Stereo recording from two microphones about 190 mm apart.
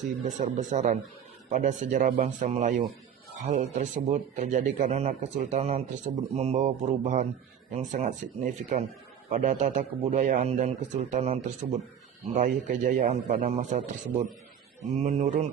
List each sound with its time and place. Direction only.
0.3 s a man's voice: 40° right (ahead or behind)